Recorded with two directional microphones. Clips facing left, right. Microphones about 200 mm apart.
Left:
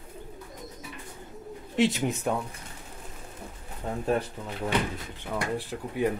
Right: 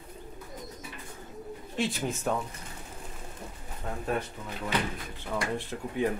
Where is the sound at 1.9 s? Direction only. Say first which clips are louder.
Left 3 dB; 15° left (ahead or behind).